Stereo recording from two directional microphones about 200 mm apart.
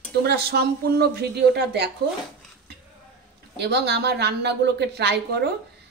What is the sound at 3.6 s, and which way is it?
A woman's voice, 55° right (ahead or behind).